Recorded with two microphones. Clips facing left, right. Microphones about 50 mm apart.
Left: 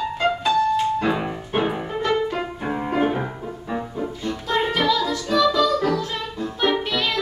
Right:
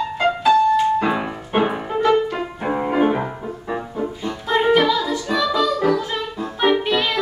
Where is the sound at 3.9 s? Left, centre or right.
Centre.